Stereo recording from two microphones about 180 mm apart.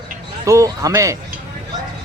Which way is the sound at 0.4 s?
20° right (ahead or behind).